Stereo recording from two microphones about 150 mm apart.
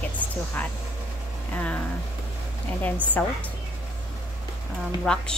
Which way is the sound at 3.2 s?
10° left (ahead or behind).